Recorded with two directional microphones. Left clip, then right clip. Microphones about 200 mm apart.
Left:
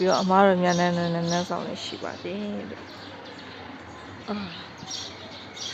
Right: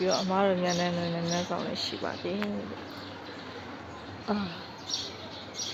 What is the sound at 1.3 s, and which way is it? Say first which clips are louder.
Speech: left 4 dB; 15° left (ahead or behind).